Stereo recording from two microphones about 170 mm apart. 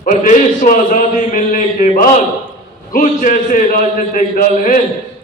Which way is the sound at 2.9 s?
50° left (ahead or behind).